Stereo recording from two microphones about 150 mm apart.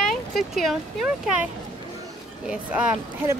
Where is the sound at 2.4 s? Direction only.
5° right (ahead or behind).